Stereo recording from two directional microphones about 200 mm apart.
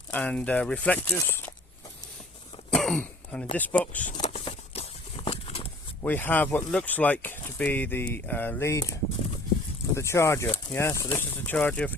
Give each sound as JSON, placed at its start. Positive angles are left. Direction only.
{"t": 0.1, "sound": "speech", "side_deg": 5}
{"t": 2.6, "sound": "throat clearing", "side_deg": 0}
{"t": 3.6, "sound": "speech", "side_deg": 10}
{"t": 4.0, "sound": "a sound", "side_deg": 35}
{"t": 6.0, "sound": "speech", "side_deg": 10}
{"t": 9.9, "sound": "speech", "side_deg": 15}